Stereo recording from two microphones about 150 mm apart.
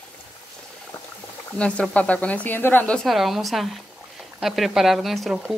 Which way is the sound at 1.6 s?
10° left (ahead or behind).